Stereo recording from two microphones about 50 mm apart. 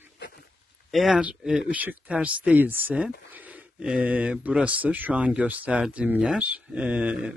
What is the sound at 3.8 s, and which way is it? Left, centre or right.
Speech, right.